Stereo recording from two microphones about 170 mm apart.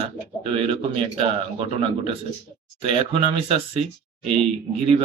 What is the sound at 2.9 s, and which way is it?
Speech, 35° right (ahead or behind).